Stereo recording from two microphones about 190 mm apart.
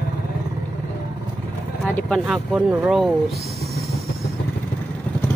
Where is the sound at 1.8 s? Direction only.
5° left (ahead or behind).